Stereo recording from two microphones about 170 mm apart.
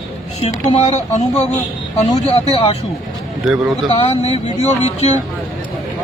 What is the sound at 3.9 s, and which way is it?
Speech, 35° left (ahead or behind).